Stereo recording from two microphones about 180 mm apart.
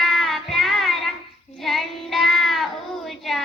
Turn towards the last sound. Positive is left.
turn(degrees=0)  # may be behind; listen again after turning